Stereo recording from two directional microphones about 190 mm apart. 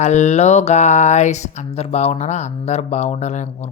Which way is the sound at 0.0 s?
35° left (ahead or behind).